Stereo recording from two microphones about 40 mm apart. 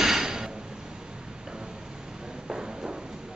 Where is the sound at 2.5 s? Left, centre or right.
Centre.